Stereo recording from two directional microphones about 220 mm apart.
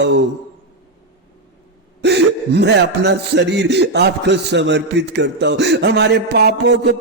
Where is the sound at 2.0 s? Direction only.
50° right (ahead or behind).